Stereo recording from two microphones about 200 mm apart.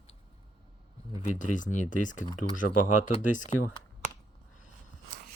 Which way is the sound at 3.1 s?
40° left (ahead or behind).